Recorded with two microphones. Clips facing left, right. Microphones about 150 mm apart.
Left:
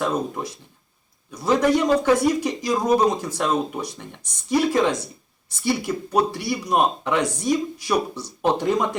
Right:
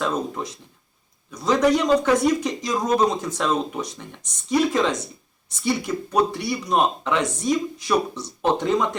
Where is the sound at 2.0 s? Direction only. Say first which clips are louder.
Left 1 dB; 10° left (ahead or behind).